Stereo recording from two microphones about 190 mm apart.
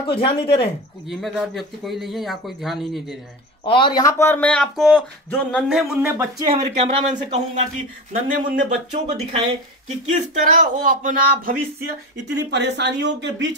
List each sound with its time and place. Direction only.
0.0 s speech: 25° left (ahead or behind)
1.0 s speech: centre (ahead or behind)
3.6 s speech: 25° left (ahead or behind); by 6.1 s 5° right (ahead or behind)
6.4 s speech: 30° right (ahead or behind); by 13.6 s 70° right (ahead or behind)